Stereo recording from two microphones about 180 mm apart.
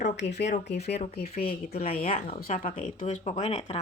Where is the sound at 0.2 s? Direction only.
70° left (ahead or behind).